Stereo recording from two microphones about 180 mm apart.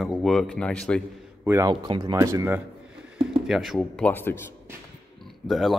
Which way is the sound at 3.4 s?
Centre (ahead or behind).